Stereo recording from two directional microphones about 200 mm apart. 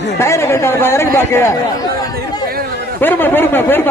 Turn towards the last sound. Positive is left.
turn(degrees=10)  # may be behind; listen again after turning